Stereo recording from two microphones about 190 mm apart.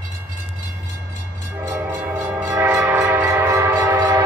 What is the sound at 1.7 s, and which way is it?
Train, 15° right (ahead or behind).